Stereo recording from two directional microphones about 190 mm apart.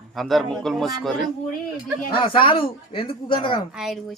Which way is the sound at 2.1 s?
25° left (ahead or behind).